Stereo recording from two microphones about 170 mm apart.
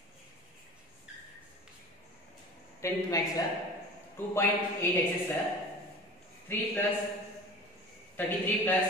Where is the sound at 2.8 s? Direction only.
20° left (ahead or behind).